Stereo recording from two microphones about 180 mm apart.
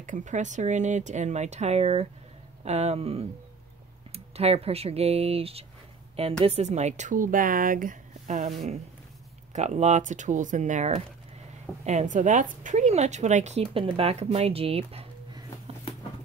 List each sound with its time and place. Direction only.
0.0 s speech: 45° right (ahead or behind)